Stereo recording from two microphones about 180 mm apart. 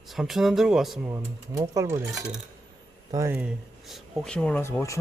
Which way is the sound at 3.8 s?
Centre (ahead or behind).